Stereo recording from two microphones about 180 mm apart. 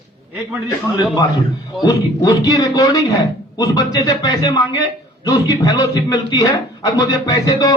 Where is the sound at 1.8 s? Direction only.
20° left (ahead or behind).